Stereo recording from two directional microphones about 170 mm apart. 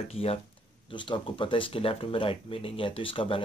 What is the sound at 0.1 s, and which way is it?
Speech, 35° left (ahead or behind).